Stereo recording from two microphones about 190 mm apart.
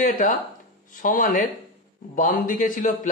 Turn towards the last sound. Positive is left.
turn(degrees=45)  # may be behind; listen again after turning